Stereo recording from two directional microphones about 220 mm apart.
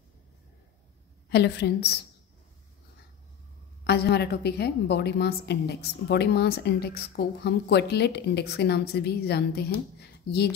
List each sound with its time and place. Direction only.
1.3 s a woman's voice: 50° left (ahead or behind)
3.8 s a woman's voice: 50° left (ahead or behind)